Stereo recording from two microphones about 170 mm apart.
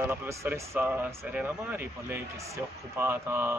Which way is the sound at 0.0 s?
15° right (ahead or behind).